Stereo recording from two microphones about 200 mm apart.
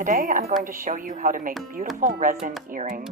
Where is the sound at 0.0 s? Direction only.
40° right (ahead or behind).